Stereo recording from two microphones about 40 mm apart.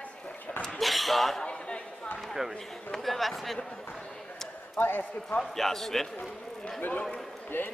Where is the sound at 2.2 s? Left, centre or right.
Centre.